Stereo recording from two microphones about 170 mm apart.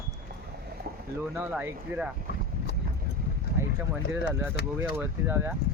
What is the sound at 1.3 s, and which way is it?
Speech, 10° right (ahead or behind).